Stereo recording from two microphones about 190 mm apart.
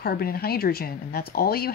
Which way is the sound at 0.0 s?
55° left (ahead or behind).